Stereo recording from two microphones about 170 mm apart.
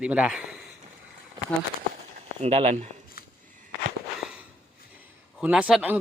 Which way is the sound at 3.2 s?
60° left (ahead or behind).